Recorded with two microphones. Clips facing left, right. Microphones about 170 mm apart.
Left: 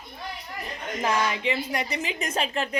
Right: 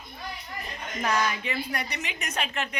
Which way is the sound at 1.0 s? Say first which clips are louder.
Left 1 dB; 25° left (ahead or behind).